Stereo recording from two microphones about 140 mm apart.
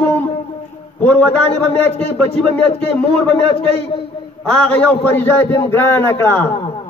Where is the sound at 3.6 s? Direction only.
45° left (ahead or behind).